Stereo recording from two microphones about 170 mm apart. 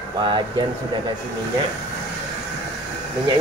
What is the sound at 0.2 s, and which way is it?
Speech, 30° right (ahead or behind).